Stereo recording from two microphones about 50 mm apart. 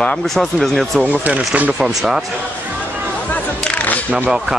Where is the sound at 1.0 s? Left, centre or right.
Right.